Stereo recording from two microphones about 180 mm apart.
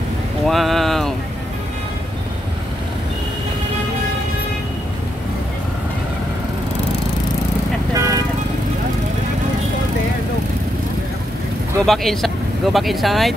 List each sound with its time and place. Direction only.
0.5 s a sound: centre (ahead or behind)
7.9 s vehicle: 20° right (ahead or behind)
11.8 s speech: centre (ahead or behind)